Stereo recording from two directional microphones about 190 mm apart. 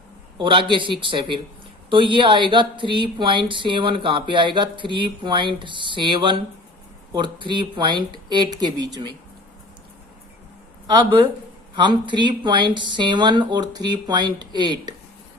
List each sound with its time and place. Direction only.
0.3 s speech: 25° right (ahead or behind)
10.8 s speech: 25° right (ahead or behind)